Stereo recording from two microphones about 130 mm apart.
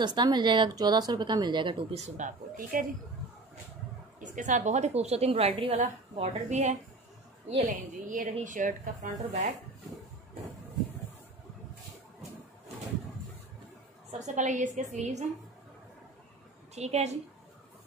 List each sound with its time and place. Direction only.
0.0 s speech: 35° right (ahead or behind)
2.0 s speech: 65° right (ahead or behind); by 2.9 s 90° right
4.2 s a woman's voice: 70° right (ahead or behind); by 5.8 s 50° right (ahead or behind)
6.1 s a woman's voice: 65° right (ahead or behind)
7.6 s speech: 90° right; by 9.5 s 70° right (ahead or behind)
14.1 s a woman's voice: 65° right (ahead or behind)
16.7 s a woman's voice: 55° right (ahead or behind)